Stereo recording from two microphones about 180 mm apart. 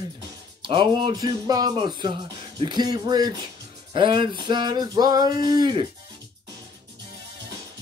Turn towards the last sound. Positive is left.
turn(degrees=-25)  # may be behind; listen again after turning